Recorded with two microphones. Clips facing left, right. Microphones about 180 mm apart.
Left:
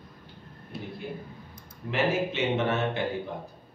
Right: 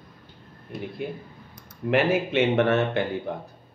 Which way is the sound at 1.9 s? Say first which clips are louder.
Right 5 dB; 60° right (ahead or behind).